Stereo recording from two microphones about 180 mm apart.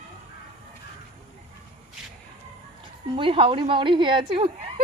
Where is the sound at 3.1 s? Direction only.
30° right (ahead or behind).